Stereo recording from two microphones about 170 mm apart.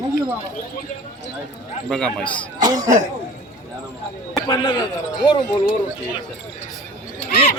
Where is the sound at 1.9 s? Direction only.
5° left (ahead or behind).